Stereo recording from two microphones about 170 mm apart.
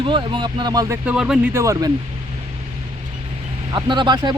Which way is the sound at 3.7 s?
25° right (ahead or behind).